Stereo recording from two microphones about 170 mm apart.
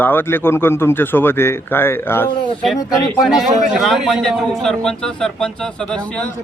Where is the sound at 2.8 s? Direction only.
Centre (ahead or behind).